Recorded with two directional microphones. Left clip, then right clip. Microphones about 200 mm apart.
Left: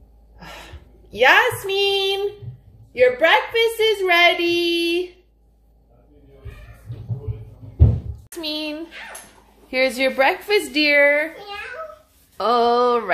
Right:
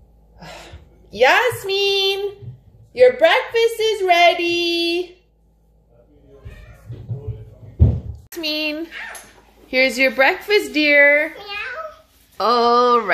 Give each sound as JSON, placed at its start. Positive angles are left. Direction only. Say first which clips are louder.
{"t": 0.4, "sound": "a sound", "louder": "right 1 dB", "side_deg": 0}
{"t": 2.9, "sound": "speech", "louder": "right 2 dB", "side_deg": -5}
{"t": 8.3, "sound": "music", "louder": "right 4 dB", "side_deg": -10}
{"t": 9.7, "sound": "a woman's voice", "louder": "right 3 dB", "side_deg": -10}